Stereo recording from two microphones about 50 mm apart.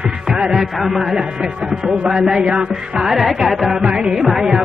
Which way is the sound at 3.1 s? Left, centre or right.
Centre.